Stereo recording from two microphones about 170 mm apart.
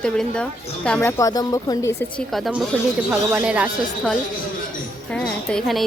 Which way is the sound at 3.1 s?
10° right (ahead or behind).